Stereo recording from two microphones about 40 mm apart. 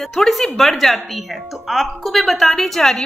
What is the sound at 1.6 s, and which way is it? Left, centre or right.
A woman's voice, centre.